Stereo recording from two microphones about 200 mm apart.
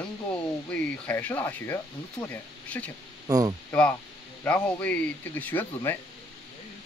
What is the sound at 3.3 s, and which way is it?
Speech, 20° right (ahead or behind).